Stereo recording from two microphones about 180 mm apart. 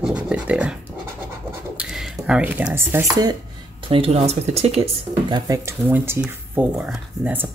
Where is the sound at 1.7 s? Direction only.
5° right (ahead or behind).